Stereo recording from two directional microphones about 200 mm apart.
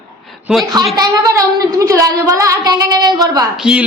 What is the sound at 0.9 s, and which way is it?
A woman's voice, 20° right (ahead or behind).